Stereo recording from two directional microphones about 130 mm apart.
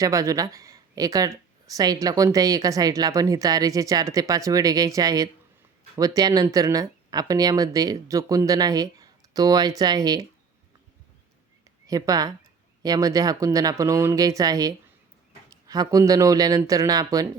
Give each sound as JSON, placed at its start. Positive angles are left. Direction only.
{"t": 0.0, "sound": "speech", "side_deg": -25}
{"t": 11.9, "sound": "speech", "side_deg": -30}